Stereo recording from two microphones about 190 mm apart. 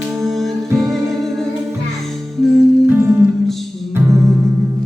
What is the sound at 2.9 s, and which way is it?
Music, 10° right (ahead or behind).